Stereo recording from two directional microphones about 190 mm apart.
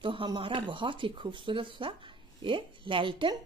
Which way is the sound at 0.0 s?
25° right (ahead or behind).